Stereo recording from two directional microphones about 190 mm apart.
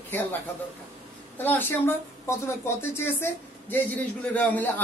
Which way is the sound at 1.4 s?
10° left (ahead or behind).